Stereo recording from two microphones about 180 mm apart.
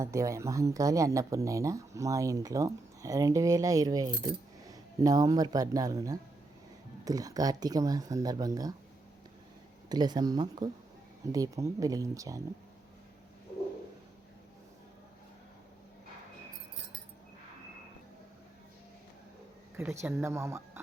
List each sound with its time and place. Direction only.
0.0 s speech: 15° right (ahead or behind)
9.9 s speech: 20° right (ahead or behind)
19.7 s speech: 15° right (ahead or behind)